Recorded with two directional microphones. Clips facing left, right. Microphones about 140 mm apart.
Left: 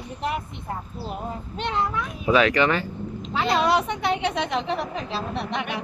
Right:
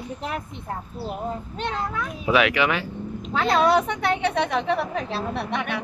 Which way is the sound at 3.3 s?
50° right (ahead or behind).